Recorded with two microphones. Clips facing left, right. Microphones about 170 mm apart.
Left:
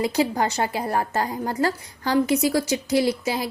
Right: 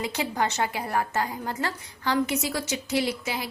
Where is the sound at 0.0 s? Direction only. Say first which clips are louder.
Left 6 dB; 35° left (ahead or behind).